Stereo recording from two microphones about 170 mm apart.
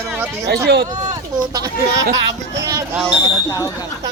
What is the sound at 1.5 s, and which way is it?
Speech, 20° right (ahead or behind).